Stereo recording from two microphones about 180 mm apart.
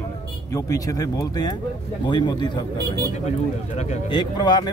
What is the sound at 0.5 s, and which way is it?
Speech, 20° left (ahead or behind).